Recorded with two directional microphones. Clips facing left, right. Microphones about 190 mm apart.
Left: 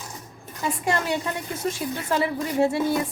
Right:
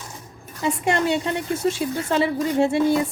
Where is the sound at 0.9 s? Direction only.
25° right (ahead or behind).